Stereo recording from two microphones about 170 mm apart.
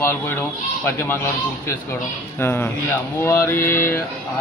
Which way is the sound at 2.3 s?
15° left (ahead or behind).